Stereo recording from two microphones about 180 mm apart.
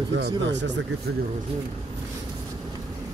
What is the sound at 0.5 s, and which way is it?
Speech, 80° right.